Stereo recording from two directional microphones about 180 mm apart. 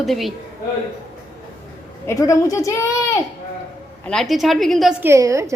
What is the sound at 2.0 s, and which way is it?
Speech, 15° left (ahead or behind).